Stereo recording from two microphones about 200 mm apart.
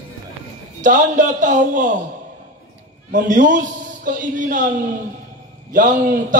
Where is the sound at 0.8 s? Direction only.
40° right (ahead or behind).